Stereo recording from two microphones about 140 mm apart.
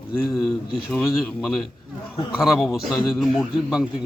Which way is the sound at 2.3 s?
5° right (ahead or behind).